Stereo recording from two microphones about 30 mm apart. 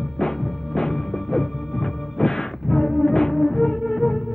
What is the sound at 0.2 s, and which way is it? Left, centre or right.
Music, left.